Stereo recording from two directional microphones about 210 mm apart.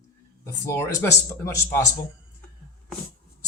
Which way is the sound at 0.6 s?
15° left (ahead or behind).